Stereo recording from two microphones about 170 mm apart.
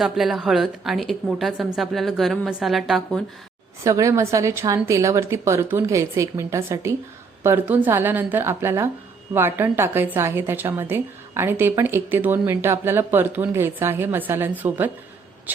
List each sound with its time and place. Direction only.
0.0 s a woman's voice: centre (ahead or behind)
3.8 s a woman's voice: 20° right (ahead or behind)